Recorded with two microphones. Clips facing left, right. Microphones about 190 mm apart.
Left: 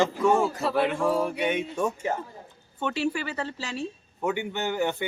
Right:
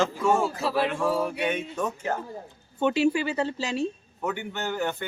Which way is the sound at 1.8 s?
15° left (ahead or behind).